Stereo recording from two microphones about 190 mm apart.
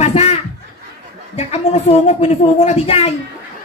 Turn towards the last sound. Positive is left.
turn(degrees=30)  # may be behind; listen again after turning